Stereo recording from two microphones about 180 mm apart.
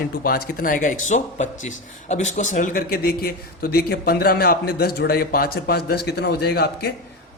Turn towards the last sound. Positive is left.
turn(degrees=65)  # may be behind; listen again after turning